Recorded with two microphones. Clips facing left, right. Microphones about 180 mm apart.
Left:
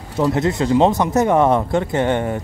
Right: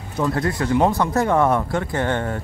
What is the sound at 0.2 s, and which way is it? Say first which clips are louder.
Speech: left 4 dB; 25° left (ahead or behind).